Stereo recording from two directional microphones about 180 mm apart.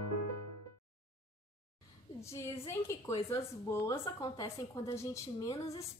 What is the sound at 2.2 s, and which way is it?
A woman's voice, 15° left (ahead or behind).